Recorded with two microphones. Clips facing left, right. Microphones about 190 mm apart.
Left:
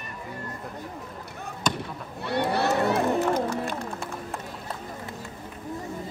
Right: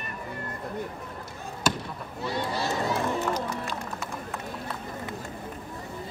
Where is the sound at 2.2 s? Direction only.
65° left (ahead or behind).